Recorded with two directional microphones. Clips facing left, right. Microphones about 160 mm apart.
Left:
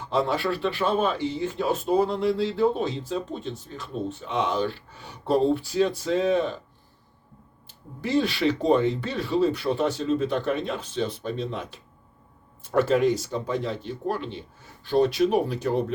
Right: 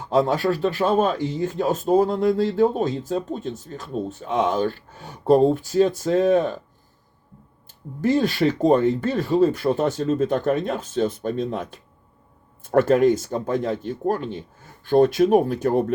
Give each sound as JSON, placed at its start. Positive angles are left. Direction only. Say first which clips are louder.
{"t": 0.0, "sound": "speech", "louder": "right 5 dB", "side_deg": -45}
{"t": 8.0, "sound": "speech", "louder": "right 4 dB", "side_deg": -45}